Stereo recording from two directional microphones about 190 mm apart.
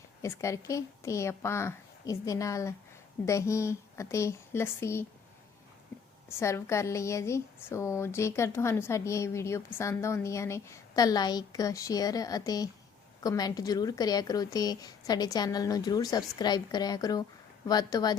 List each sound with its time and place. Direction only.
0.2 s speech: 15° left (ahead or behind)
6.2 s a woman's voice: 15° left (ahead or behind)